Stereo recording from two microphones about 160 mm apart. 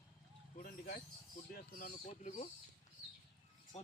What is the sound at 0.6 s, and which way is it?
Bird, 65° left (ahead or behind).